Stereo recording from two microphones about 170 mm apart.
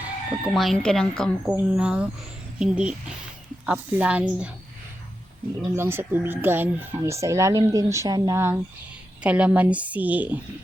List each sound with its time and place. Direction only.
0.0 s speech: centre (ahead or behind)
1.5 s speech: 5° right (ahead or behind)
5.7 s speech: 15° right (ahead or behind)